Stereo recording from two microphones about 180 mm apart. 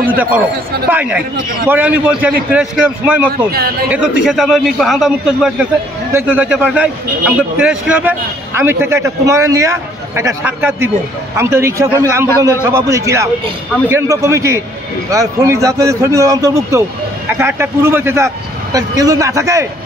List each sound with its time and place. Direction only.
0.8 s a man's voice: 10° right (ahead or behind)